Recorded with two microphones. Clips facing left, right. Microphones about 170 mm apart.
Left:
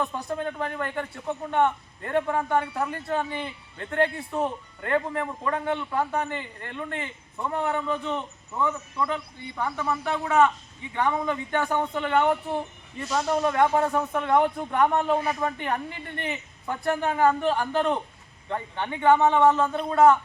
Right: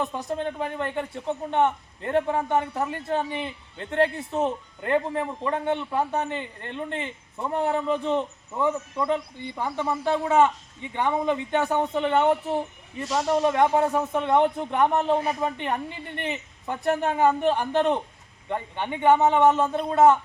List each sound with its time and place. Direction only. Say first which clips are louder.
0.0 s a man's voice: right 1 dB; 20° right (ahead or behind)
13.8 s speech: right 1 dB; 5° right (ahead or behind)
14.1 s a man's voice: right 1 dB; 20° right (ahead or behind)
19.6 s speech: right 1 dB; 10° right (ahead or behind)
19.9 s a man's voice: even; 20° right (ahead or behind)